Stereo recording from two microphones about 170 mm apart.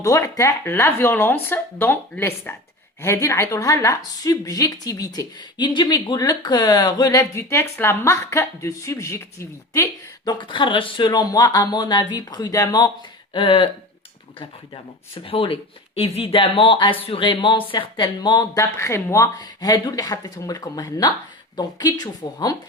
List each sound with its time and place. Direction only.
0.0 s a woman's voice: 20° left (ahead or behind)
10.5 s a woman's voice: 30° left (ahead or behind)